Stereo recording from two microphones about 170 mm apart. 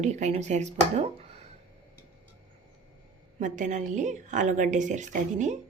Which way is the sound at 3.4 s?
45° right (ahead or behind).